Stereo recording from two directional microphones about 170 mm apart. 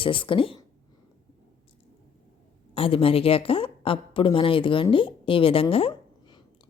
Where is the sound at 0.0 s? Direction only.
30° left (ahead or behind).